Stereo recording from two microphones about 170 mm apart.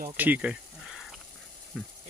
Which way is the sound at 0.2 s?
10° right (ahead or behind).